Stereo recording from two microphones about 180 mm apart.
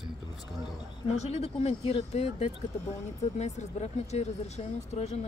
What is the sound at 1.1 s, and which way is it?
Speech, 35° left (ahead or behind).